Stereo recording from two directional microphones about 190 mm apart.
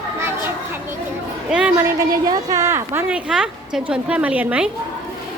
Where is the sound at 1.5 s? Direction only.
5° right (ahead or behind).